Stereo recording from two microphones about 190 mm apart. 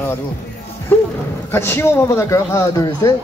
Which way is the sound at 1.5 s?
10° left (ahead or behind).